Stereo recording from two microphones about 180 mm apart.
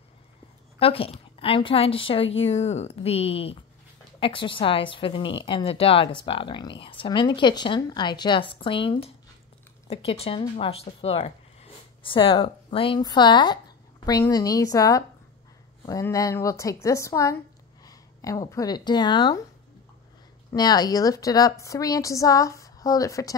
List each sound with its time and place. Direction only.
0.7 s a woman's voice: 30° left (ahead or behind)
20.5 s a woman's voice: 20° left (ahead or behind)